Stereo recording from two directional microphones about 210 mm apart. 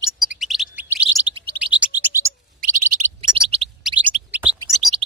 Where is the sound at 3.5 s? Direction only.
30° right (ahead or behind).